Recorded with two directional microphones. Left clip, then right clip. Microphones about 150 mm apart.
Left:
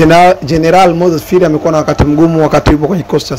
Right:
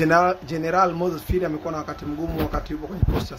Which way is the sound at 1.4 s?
20° left (ahead or behind).